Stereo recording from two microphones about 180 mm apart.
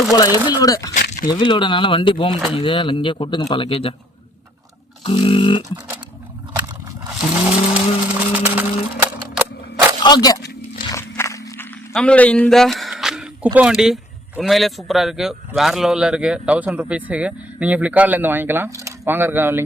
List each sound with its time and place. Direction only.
0.1 s a man's voice: 20° left (ahead or behind)
5.0 s speech: 30° left (ahead or behind)
7.3 s vehicle: 10° right (ahead or behind)
10.0 s speech: 20° left (ahead or behind)
10.9 s walk: 15° left (ahead or behind)
11.9 s speech: 5° left (ahead or behind); by 19.6 s 10° right (ahead or behind)